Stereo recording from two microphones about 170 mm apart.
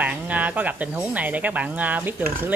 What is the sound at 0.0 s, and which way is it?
Speech, 10° right (ahead or behind).